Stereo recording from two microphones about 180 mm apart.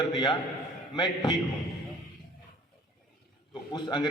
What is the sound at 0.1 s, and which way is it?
A man's voice, 25° left (ahead or behind).